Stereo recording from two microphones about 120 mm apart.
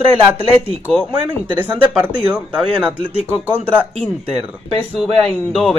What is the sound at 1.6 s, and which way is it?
Speech, 10° right (ahead or behind).